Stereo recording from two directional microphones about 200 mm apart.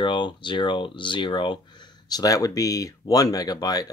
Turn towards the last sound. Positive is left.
turn(degrees=20)  # may be behind; listen again after turning